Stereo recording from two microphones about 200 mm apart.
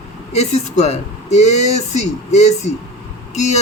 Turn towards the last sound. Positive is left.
turn(degrees=35)  # may be behind; listen again after turning